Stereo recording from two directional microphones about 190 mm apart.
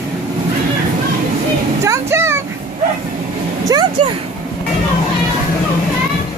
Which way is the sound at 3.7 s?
20° right (ahead or behind).